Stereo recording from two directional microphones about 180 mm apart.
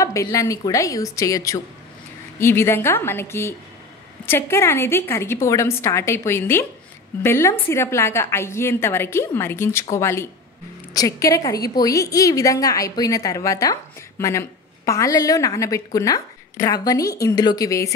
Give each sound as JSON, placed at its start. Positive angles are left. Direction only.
{"t": 0.0, "sound": "a woman's voice", "side_deg": 20}